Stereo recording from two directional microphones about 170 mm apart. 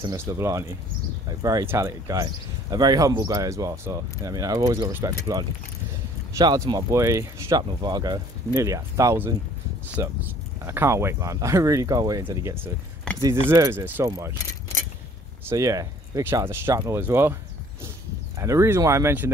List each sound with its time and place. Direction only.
0.0 s speech: 20° right (ahead or behind)
15.4 s speech: 20° right (ahead or behind)
18.4 s speech: 15° right (ahead or behind)